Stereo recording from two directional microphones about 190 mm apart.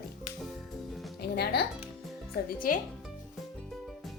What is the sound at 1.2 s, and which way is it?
A woman's voice, 60° left (ahead or behind).